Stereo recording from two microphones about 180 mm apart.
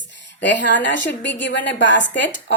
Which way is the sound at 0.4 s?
90° left.